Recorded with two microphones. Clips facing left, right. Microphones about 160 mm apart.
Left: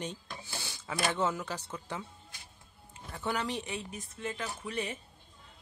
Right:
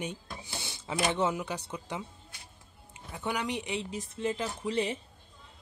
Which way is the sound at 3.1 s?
15° right (ahead or behind).